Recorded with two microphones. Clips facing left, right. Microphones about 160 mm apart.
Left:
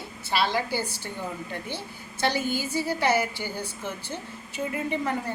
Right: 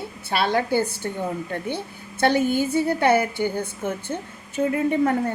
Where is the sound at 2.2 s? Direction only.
55° right (ahead or behind).